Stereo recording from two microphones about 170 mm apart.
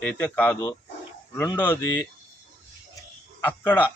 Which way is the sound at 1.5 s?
10° left (ahead or behind).